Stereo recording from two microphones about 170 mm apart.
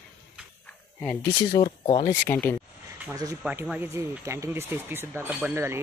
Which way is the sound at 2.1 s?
10° left (ahead or behind).